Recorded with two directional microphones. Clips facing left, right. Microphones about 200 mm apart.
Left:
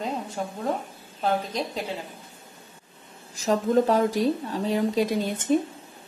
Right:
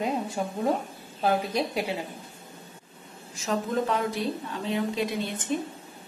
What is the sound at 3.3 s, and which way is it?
A woman's voice, 35° left (ahead or behind).